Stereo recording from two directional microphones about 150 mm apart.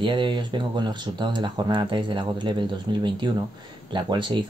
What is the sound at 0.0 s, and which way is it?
Speech, 30° right (ahead or behind).